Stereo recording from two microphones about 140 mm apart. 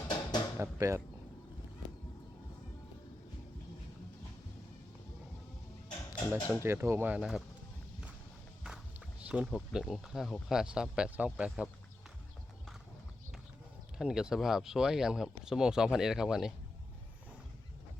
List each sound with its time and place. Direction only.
0.1 s a sound: 30° left (ahead or behind)
0.6 s speech: 20° right (ahead or behind)
6.3 s speech: 15° right (ahead or behind)
9.2 s speech: 10° right (ahead or behind)
14.0 s speech: 5° right (ahead or behind)